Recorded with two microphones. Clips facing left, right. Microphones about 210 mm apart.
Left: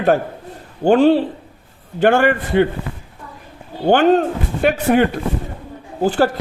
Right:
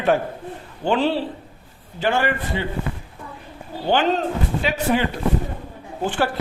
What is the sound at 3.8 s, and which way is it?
A man's voice, 50° left (ahead or behind).